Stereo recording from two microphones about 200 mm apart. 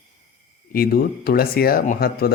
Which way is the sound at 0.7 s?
50° left (ahead or behind).